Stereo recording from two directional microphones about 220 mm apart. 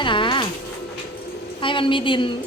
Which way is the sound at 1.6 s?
25° left (ahead or behind).